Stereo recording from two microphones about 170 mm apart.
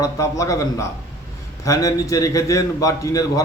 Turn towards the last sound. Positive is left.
turn(degrees=20)  # may be behind; listen again after turning